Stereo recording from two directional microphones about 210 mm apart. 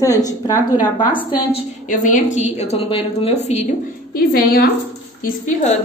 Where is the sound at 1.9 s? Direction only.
40° left (ahead or behind).